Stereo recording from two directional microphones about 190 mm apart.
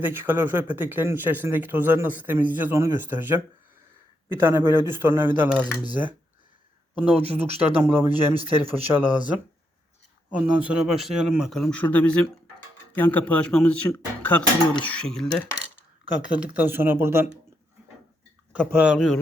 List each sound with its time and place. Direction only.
0.0 s speech: 10° right (ahead or behind)
7.3 s speech: 35° right (ahead or behind)
7.6 s speech: 10° right (ahead or behind)
8.4 s speech: 30° right (ahead or behind)
8.7 s speech: 10° right (ahead or behind)
10.3 s speech: 5° right (ahead or behind)
16.4 s speech: 10° right (ahead or behind)
18.5 s speech: 5° right (ahead or behind)